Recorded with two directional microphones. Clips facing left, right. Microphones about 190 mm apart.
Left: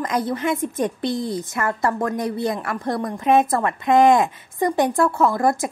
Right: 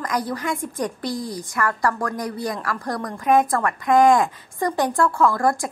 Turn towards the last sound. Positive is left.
turn(degrees=20)  # may be behind; listen again after turning